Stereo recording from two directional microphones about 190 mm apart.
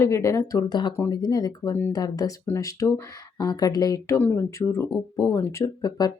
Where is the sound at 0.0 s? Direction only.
15° left (ahead or behind).